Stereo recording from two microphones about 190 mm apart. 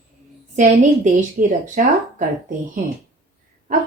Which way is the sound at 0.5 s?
40° right (ahead or behind).